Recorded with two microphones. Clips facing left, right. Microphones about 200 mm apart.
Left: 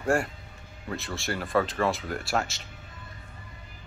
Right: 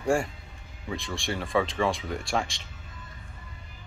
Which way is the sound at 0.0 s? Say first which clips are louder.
Even; centre (ahead or behind).